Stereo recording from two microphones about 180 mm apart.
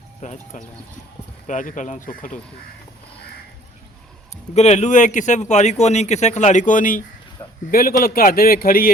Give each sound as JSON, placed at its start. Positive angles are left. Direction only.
{"t": 0.2, "sound": "a man's voice", "side_deg": 40}
{"t": 4.5, "sound": "a man's voice", "side_deg": 40}